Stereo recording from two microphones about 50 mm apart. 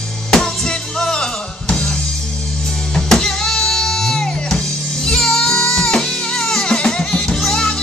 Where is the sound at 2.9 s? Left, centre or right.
Centre.